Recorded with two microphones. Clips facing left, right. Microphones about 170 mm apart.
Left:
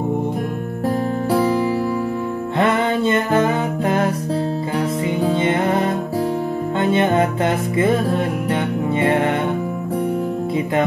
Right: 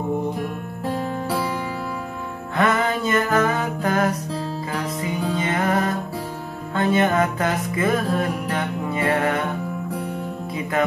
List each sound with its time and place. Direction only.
2.5 s music: 30° left (ahead or behind)